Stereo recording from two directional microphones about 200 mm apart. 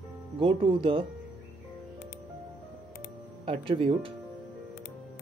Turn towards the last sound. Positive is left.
turn(degrees=-25)  # may be behind; listen again after turning